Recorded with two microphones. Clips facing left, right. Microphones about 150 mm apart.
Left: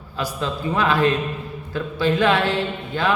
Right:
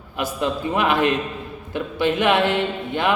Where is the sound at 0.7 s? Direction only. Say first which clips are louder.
Left 1 dB; 20° right (ahead or behind).